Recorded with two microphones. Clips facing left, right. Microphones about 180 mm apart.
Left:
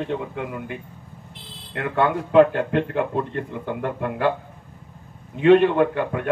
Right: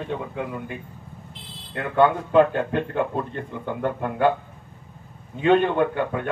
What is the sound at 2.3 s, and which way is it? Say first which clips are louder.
Speech: left 2 dB; 75° left (ahead or behind).